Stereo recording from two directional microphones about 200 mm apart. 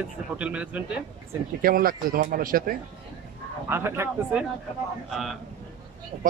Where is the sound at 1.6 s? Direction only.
45° right (ahead or behind).